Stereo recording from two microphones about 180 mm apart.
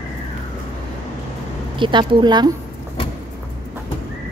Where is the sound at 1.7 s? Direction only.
25° right (ahead or behind).